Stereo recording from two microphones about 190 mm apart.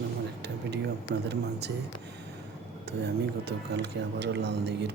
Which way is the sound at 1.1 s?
60° right (ahead or behind).